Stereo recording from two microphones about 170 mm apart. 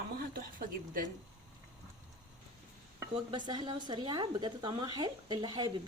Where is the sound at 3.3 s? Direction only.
25° right (ahead or behind).